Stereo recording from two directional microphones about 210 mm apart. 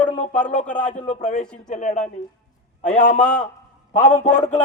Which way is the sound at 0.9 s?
30° left (ahead or behind).